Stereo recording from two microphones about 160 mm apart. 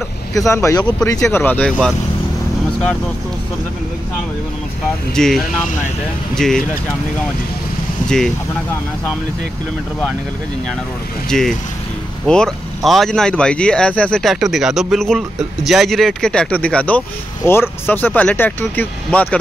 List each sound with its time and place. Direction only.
0.3 s a man's voice: 20° left (ahead or behind)
5.1 s a man's voice: 5° left (ahead or behind)
11.2 s a man's voice: 5° left (ahead or behind)